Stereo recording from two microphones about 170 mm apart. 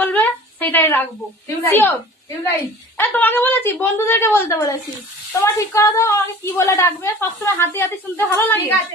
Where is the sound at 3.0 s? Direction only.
10° left (ahead or behind).